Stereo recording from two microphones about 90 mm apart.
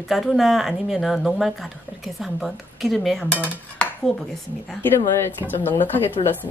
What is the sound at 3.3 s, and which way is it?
Dishes, 15° left (ahead or behind).